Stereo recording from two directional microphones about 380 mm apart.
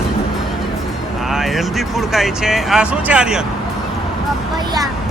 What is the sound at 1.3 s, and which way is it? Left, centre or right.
Speech, centre.